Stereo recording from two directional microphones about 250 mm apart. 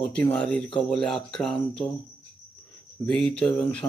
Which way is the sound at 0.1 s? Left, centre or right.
Centre.